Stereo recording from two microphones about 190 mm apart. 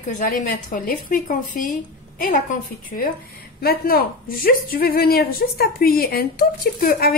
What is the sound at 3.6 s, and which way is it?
Speech, 55° left (ahead or behind).